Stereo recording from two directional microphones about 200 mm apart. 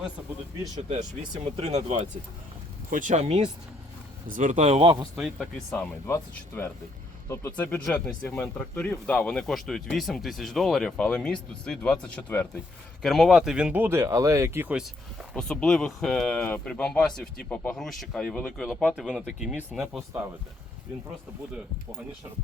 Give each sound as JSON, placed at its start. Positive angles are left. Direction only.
{"t": 0.9, "sound": "speech", "side_deg": -25}
{"t": 5.1, "sound": "speech", "side_deg": 0}
{"t": 5.7, "sound": "speech", "side_deg": 15}
{"t": 15.3, "sound": "speech", "side_deg": 0}